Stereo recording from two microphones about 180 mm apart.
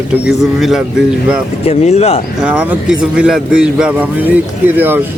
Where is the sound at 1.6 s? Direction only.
35° left (ahead or behind).